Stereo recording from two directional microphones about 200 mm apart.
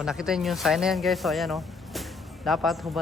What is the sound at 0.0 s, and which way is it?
Speech, 5° right (ahead or behind).